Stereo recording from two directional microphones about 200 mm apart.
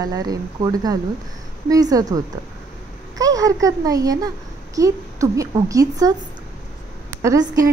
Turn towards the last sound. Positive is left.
turn(degrees=-15)  # may be behind; listen again after turning